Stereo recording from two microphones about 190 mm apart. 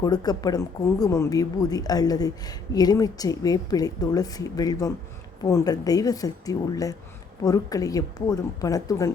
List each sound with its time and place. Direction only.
0.0 s speech: 20° left (ahead or behind)